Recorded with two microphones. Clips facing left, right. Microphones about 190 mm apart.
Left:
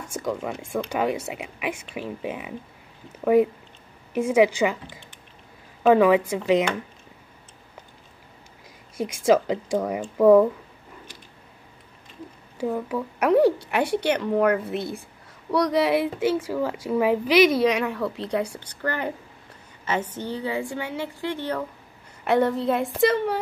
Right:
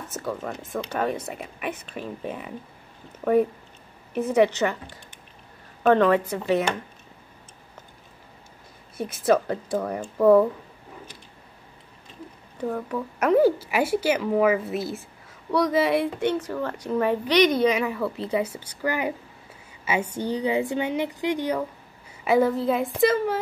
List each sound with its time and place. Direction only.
0.0 s speech: 10° left (ahead or behind)
4.1 s speech: 10° left (ahead or behind)
5.9 s speech: 10° left (ahead or behind)
9.0 s speech: 10° left (ahead or behind)
12.5 s a woman's voice: 10° left (ahead or behind); by 21.6 s 15° right (ahead or behind)
22.2 s a woman's voice: centre (ahead or behind)